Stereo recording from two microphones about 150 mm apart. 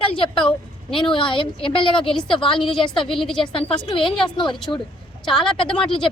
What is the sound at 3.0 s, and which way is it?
Speech, centre (ahead or behind).